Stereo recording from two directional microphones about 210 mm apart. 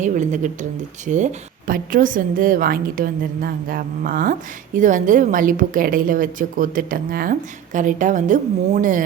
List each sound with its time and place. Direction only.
0.0 s speech: 35° right (ahead or behind)